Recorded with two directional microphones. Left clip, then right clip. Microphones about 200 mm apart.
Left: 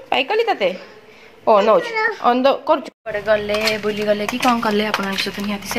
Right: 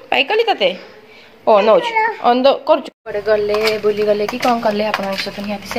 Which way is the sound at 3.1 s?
10° right (ahead or behind).